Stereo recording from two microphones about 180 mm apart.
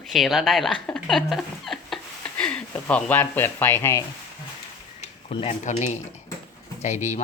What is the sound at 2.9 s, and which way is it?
Speech, 10° left (ahead or behind).